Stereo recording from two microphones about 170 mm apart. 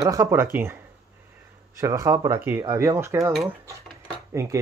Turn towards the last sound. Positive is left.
turn(degrees=-20)  # may be behind; listen again after turning